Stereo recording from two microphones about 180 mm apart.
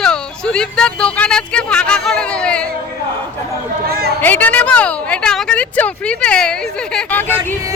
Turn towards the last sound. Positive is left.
turn(degrees=10)  # may be behind; listen again after turning